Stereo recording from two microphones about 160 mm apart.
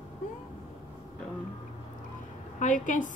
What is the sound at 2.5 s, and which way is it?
Speech, 55° left (ahead or behind).